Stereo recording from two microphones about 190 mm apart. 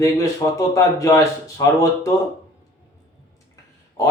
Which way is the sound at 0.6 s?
15° left (ahead or behind).